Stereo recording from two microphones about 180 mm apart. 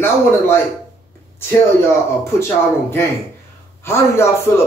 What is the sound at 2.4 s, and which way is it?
A man's voice, 15° left (ahead or behind).